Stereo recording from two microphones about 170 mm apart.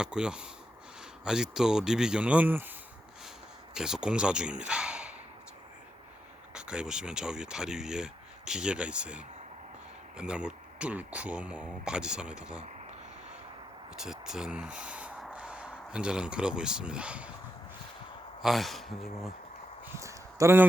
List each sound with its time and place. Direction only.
0.0 s speech: 5° right (ahead or behind)
3.8 s speech: 5° right (ahead or behind)
6.5 s speech: 5° right (ahead or behind)
13.9 s speech: 5° right (ahead or behind)
18.4 s speech: centre (ahead or behind)
20.0 s a sound: 15° right (ahead or behind)